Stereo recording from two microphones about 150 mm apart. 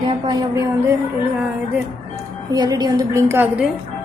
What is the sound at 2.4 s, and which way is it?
A woman's voice, 25° right (ahead or behind).